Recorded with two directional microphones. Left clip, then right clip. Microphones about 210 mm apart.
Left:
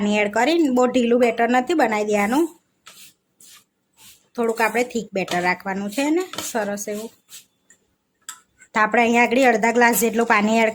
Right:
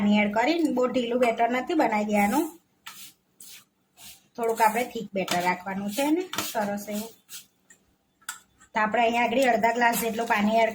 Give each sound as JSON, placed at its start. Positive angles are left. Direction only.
{"t": 0.1, "sound": "speech", "side_deg": 50}
{"t": 4.3, "sound": "speech", "side_deg": 45}
{"t": 8.7, "sound": "speech", "side_deg": 45}